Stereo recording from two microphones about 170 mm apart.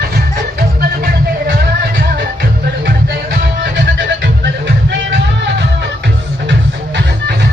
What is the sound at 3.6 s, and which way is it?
Music, 90° right.